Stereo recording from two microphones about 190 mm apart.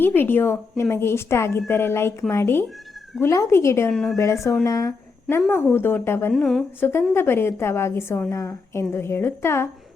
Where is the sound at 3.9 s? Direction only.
5° left (ahead or behind).